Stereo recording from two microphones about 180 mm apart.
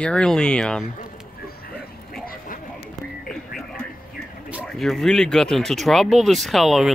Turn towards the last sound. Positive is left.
turn(degrees=0)  # may be behind; listen again after turning